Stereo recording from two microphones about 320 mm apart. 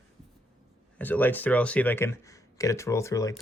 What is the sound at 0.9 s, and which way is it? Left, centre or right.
Speech, centre.